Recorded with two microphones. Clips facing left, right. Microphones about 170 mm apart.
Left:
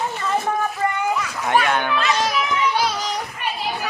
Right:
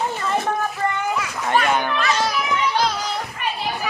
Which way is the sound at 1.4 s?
Centre (ahead or behind).